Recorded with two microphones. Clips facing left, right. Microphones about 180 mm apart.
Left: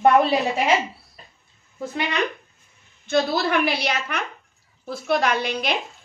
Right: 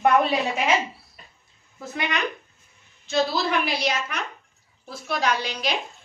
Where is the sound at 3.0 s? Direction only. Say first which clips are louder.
Left 2 dB; 55° left (ahead or behind).